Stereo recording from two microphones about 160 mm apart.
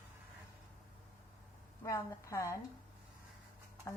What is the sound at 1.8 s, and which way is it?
Speech, 20° left (ahead or behind).